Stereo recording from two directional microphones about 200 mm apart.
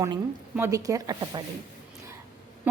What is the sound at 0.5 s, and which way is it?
Speech, 15° right (ahead or behind).